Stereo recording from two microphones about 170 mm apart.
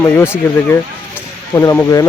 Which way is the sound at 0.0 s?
10° left (ahead or behind).